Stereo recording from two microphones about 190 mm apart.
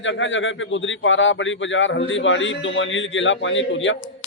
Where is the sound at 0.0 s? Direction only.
80° left.